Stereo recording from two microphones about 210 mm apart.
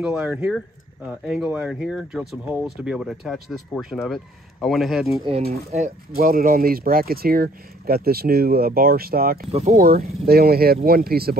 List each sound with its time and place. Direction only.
0.0 s speech: 5° right (ahead or behind)
5.5 s speech: 30° right (ahead or behind)
6.1 s speech: 45° right (ahead or behind)
9.5 s speech: 30° right (ahead or behind)
9.8 s speech: 45° right (ahead or behind)